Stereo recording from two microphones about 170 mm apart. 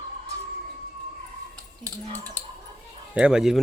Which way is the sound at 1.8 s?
20° right (ahead or behind).